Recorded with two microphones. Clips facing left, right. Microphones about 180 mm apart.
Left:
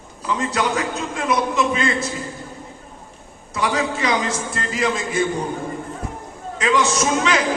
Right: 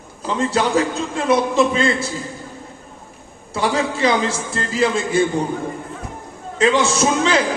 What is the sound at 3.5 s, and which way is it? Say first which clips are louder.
A man's voice: right 2 dB; 30° right (ahead or behind).